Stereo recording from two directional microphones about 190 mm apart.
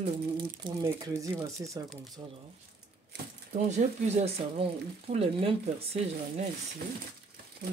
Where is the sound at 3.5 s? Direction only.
35° right (ahead or behind).